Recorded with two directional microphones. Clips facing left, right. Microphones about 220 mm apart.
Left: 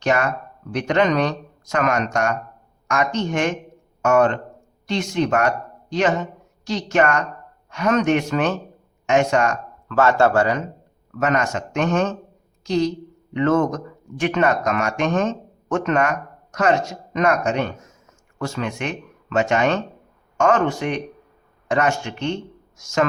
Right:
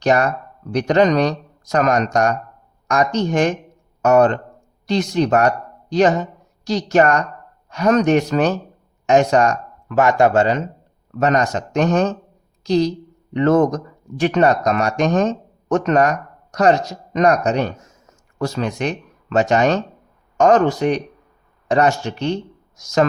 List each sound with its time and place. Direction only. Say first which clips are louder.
0.0 s speech: right 4 dB; 35° right (ahead or behind)
9.9 s a man's voice: right 2 dB; 15° right (ahead or behind)
11.2 s a woman's voice: right 3 dB; 35° right (ahead or behind)